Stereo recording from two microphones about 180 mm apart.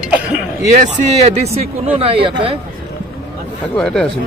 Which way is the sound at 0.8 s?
40° right (ahead or behind).